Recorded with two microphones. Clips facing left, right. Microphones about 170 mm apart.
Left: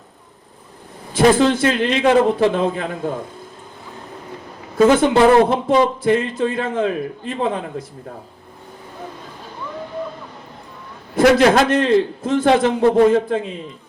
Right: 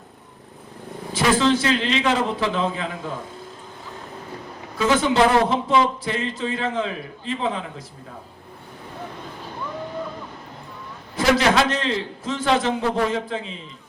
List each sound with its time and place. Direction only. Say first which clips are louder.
1.1 s a man's voice: left 5 dB; 55° left (ahead or behind)
4.8 s a man's voice: left 6 dB; 50° left (ahead or behind)
11.1 s a man's voice: left 6 dB; 55° left (ahead or behind)